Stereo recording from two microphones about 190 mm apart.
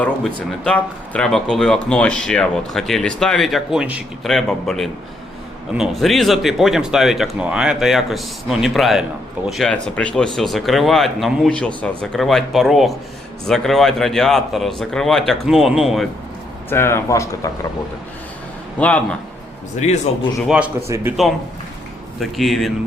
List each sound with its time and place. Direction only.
0.6 s speech: 5° left (ahead or behind)
16.6 s speech: 10° left (ahead or behind)
18.8 s speech: 5° left (ahead or behind)
19.8 s speech: 35° left (ahead or behind)
20.9 s speech: 10° right (ahead or behind)
22.2 s speech: centre (ahead or behind)